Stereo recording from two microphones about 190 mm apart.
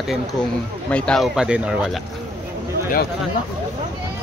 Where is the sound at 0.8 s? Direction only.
5° left (ahead or behind).